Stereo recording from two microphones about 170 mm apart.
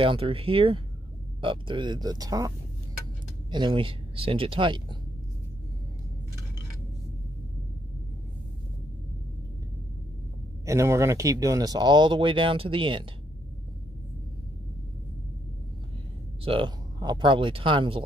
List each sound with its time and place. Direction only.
0.0 s speech: 35° right (ahead or behind)
10.6 s speech: 15° right (ahead or behind)
16.4 s speech: 30° right (ahead or behind)